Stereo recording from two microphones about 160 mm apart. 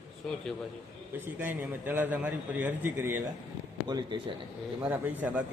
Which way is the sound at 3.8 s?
30° right (ahead or behind).